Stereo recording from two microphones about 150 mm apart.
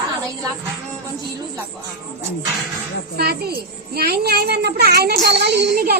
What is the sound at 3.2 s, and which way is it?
A child's voice, 90° right.